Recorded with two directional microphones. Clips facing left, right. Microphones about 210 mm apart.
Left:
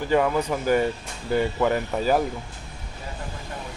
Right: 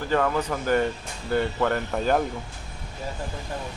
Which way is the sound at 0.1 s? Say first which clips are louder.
Left 2 dB; 10° left (ahead or behind).